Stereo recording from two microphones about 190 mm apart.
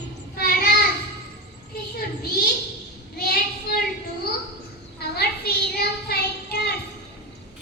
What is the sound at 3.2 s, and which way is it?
Child singing, 55° left (ahead or behind).